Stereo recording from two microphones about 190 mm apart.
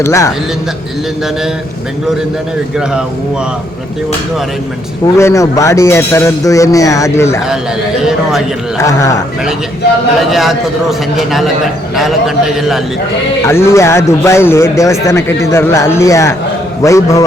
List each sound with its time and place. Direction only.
0.0 s a man's voice: 15° left (ahead or behind)
5.1 s a man's voice: 15° left (ahead or behind)
7.4 s a man's voice: 5° right (ahead or behind)
8.8 s a man's voice: 15° left (ahead or behind)
10.2 s a man's voice: centre (ahead or behind)
12.5 s a man's voice: centre (ahead or behind)
13.4 s a man's voice: 15° left (ahead or behind)